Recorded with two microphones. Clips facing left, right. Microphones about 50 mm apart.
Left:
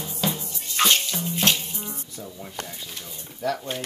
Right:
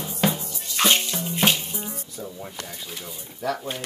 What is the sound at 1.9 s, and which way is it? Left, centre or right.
Music, right.